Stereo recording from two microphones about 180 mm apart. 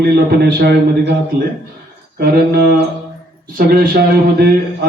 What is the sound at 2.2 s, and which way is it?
Speech, 60° right (ahead or behind).